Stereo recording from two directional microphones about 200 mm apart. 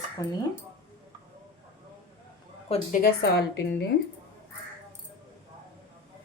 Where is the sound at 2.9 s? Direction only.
50° left (ahead or behind).